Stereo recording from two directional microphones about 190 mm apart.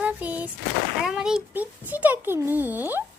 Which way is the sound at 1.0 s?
5° right (ahead or behind).